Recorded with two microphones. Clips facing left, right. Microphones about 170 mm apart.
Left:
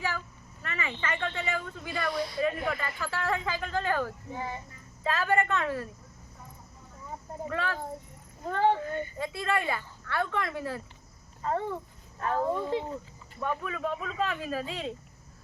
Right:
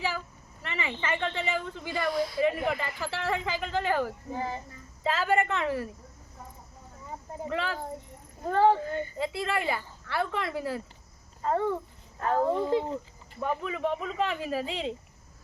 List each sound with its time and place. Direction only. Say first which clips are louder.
0.6 s speech: right 1 dB; 20° right (ahead or behind)
2.1 s speech: right 3 dB; centre (ahead or behind)
2.4 s speech: right 2 dB; 20° right (ahead or behind)
4.3 s speech: right 3 dB; 35° right (ahead or behind)
5.0 s a woman's voice: right 1 dB; 15° right (ahead or behind)
7.4 s speech: right 1 dB; 20° right (ahead or behind)
8.4 s speech: right 3 dB; 35° right (ahead or behind)
9.1 s speech: left 1 dB; 25° right (ahead or behind)
12.2 s speech: right 3 dB; 35° right (ahead or behind)